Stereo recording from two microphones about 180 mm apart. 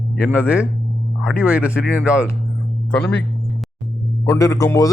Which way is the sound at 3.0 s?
10° left (ahead or behind).